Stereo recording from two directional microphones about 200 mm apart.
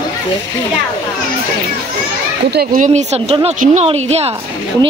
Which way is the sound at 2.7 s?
35° right (ahead or behind).